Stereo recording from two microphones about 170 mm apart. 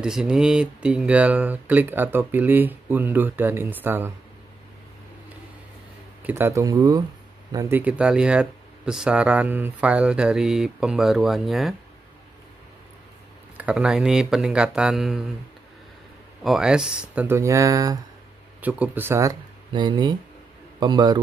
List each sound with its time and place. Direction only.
0.0 s speech: 5° right (ahead or behind)
6.2 s speech: 15° right (ahead or behind)
13.6 s speech: 5° right (ahead or behind)
16.4 s speech: 5° right (ahead or behind); by 17.9 s 20° right (ahead or behind)
18.6 s a man's voice: 10° right (ahead or behind); by 21.2 s 25° right (ahead or behind)